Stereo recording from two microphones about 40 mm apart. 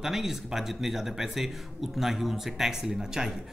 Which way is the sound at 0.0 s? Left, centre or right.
Centre.